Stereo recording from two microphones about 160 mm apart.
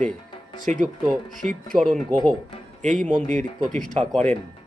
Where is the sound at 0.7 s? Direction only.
45° right (ahead or behind).